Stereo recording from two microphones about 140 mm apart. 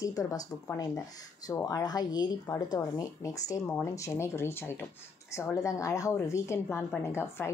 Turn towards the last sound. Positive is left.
turn(degrees=20)  # may be behind; listen again after turning